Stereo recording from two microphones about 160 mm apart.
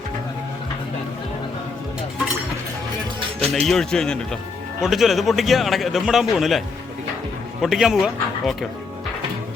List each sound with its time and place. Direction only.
3.7 s a man's voice: 5° left (ahead or behind)
7.6 s speech: centre (ahead or behind)